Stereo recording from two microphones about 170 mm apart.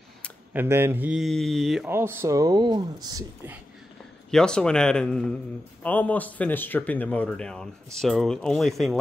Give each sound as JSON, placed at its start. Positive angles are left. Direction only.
{"t": 0.5, "sound": "speech", "side_deg": -10}
{"t": 1.9, "sound": "speech", "side_deg": -15}
{"t": 4.3, "sound": "speech", "side_deg": 5}